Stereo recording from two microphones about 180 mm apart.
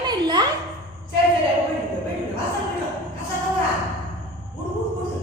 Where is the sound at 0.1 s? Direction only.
25° right (ahead or behind).